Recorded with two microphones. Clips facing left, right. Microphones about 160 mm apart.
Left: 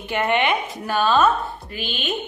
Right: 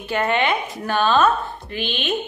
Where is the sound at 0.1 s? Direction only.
15° left (ahead or behind).